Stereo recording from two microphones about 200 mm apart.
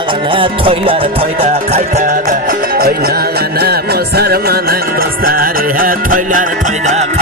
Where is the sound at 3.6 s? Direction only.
50° right (ahead or behind).